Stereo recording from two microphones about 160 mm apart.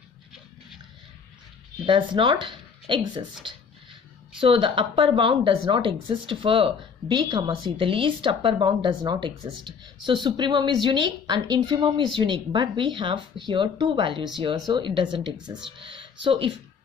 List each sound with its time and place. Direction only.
1.9 s speech: 30° right (ahead or behind)
4.4 s speech: 35° right (ahead or behind)